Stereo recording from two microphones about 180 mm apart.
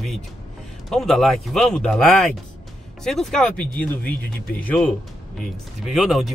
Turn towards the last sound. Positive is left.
turn(degrees=0)  # may be behind; listen again after turning